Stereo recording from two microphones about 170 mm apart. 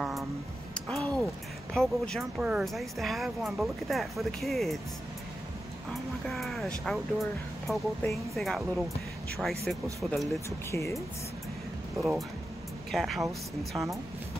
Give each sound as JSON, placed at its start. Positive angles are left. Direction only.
{"t": 0.7, "sound": "a sound", "side_deg": 5}
{"t": 1.7, "sound": "a woman's voice", "side_deg": 5}
{"t": 6.2, "sound": "a woman's voice", "side_deg": 0}
{"t": 10.7, "sound": "speech", "side_deg": 15}
{"t": 12.0, "sound": "a woman's voice", "side_deg": 0}
{"t": 13.7, "sound": "speech", "side_deg": -25}